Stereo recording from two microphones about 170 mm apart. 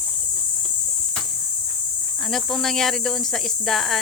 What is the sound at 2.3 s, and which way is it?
Speech, centre (ahead or behind).